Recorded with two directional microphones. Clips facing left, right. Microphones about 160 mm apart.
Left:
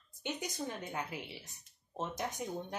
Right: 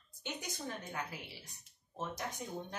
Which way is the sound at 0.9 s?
20° left (ahead or behind).